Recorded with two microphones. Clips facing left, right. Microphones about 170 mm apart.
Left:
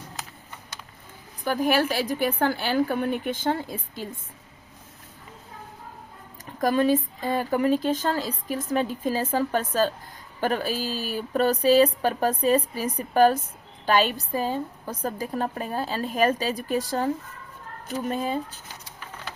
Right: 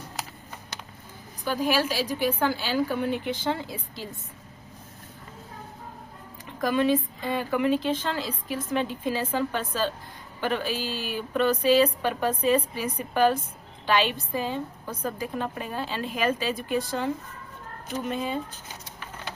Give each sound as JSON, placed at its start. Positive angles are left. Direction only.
{"t": 1.5, "sound": "a woman's voice", "side_deg": 55}
{"t": 6.4, "sound": "speech", "side_deg": 40}
{"t": 18.1, "sound": "speech", "side_deg": 40}